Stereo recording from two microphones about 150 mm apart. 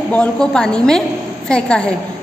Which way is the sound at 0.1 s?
5° left (ahead or behind).